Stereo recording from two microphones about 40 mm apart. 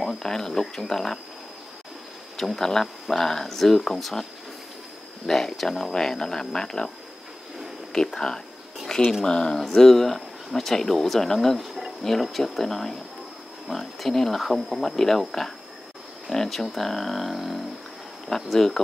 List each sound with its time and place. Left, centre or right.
0.2 s speech: centre
2.3 s speech: centre
7.9 s speech: centre
11.5 s a sound: centre
12.0 s speech: centre
18.3 s speech: centre